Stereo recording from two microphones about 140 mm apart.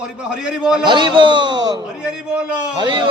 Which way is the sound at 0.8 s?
35° right (ahead or behind).